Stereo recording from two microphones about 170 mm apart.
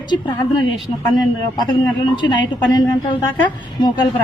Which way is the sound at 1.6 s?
25° left (ahead or behind).